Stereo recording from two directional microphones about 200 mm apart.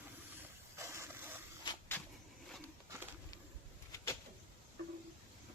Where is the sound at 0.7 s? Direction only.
15° right (ahead or behind).